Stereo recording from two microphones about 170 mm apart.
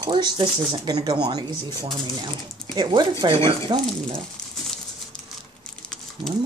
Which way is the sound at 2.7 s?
25° right (ahead or behind).